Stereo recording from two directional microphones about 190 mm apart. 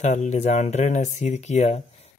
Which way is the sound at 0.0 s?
35° left (ahead or behind).